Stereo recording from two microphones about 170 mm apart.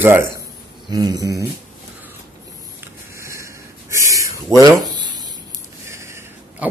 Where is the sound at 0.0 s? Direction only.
15° right (ahead or behind).